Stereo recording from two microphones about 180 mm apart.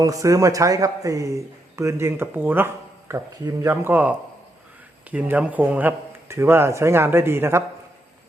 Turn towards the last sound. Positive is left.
turn(degrees=-15)  # may be behind; listen again after turning